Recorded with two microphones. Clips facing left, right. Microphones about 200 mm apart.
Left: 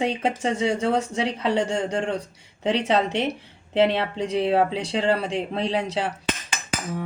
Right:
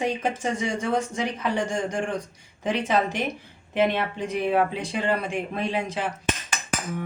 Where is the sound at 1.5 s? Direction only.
70° left (ahead or behind).